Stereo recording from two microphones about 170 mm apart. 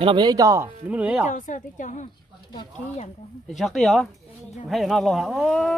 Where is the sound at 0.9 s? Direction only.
10° right (ahead or behind).